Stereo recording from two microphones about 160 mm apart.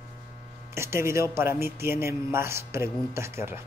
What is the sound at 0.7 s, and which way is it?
A man's voice, 15° right (ahead or behind).